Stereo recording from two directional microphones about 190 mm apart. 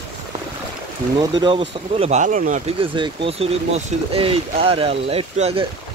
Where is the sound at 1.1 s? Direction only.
25° right (ahead or behind).